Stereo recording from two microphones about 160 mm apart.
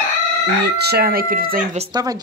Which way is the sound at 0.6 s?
85° right.